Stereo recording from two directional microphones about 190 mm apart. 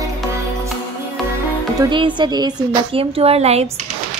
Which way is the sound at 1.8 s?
25° right (ahead or behind).